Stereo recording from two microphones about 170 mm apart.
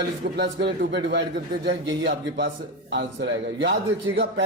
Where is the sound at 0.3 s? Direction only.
80° right.